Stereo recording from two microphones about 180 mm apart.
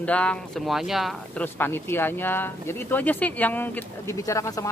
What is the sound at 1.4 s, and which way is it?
Speech, 10° left (ahead or behind).